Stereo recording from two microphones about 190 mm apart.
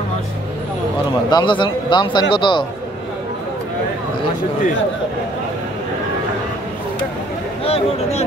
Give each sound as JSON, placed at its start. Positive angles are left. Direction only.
{"t": 1.3, "sound": "speech", "side_deg": 25}
{"t": 7.6, "sound": "speech", "side_deg": 30}